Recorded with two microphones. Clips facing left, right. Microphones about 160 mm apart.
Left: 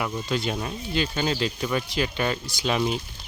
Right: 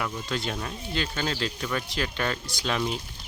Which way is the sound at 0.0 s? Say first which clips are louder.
Left 4 dB; 5° left (ahead or behind).